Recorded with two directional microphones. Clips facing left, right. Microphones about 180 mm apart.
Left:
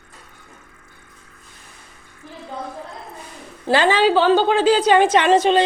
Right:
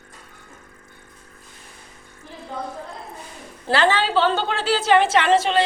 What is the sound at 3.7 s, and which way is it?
A woman's voice, 15° left (ahead or behind).